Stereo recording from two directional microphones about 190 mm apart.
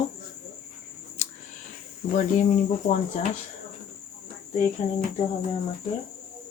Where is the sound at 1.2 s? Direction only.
40° left (ahead or behind).